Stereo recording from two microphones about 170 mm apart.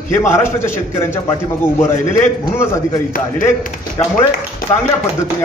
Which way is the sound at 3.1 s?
50° left (ahead or behind).